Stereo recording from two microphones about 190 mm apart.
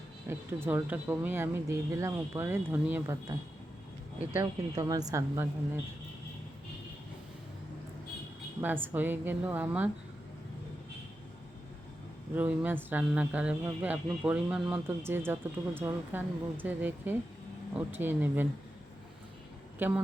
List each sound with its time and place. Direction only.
0.3 s speech: 10° right (ahead or behind)
8.6 s speech: 10° right (ahead or behind)
12.4 s speech: 10° right (ahead or behind)
19.8 s speech: 10° right (ahead or behind)